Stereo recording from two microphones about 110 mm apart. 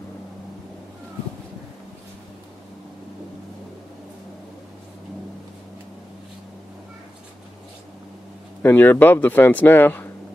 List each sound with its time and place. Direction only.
8.6 s speech: 15° left (ahead or behind)